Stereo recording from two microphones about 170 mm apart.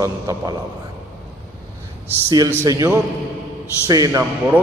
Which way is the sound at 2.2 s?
20° right (ahead or behind).